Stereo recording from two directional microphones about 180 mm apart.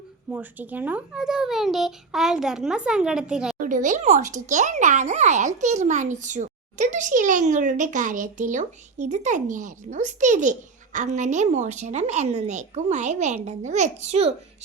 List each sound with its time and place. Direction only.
0.3 s a child's voice: 10° right (ahead or behind)
3.6 s speech: 45° right (ahead or behind)